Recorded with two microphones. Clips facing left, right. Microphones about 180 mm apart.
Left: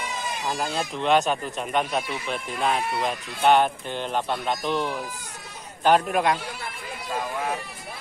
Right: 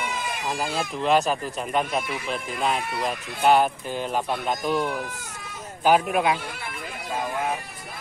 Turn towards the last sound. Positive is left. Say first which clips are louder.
# even
turn(degrees=0)  # may be behind; listen again after turning